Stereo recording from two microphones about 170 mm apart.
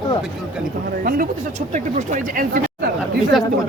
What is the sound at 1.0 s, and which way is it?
Speech, 55° right (ahead or behind).